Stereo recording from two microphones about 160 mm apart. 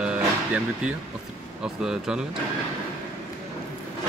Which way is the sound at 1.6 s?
5° right (ahead or behind).